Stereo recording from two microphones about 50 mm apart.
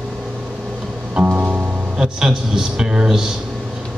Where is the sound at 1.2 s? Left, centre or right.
Right.